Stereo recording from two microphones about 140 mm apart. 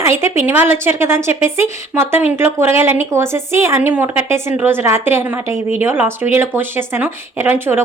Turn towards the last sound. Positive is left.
turn(degrees=-15)  # may be behind; listen again after turning